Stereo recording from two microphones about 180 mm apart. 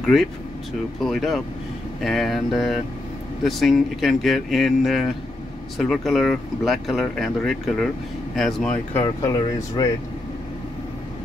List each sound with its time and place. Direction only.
0.0 s speech: centre (ahead or behind)
9.0 s speech: 20° left (ahead or behind)